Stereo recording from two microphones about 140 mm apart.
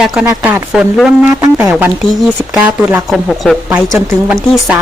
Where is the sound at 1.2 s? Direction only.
20° right (ahead or behind).